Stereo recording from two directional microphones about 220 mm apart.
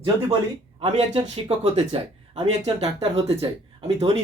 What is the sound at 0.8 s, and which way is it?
Speech, 25° right (ahead or behind).